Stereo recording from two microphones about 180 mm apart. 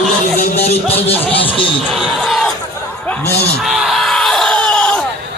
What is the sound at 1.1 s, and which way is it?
Speech, 10° left (ahead or behind).